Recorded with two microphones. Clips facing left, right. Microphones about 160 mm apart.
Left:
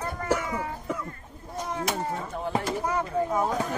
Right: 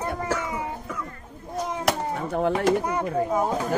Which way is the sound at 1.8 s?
70° right (ahead or behind).